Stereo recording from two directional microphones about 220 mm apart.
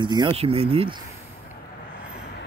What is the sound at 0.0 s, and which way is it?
Speech, 20° right (ahead or behind).